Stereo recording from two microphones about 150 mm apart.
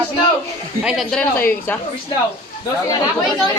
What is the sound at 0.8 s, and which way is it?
Speech, centre (ahead or behind).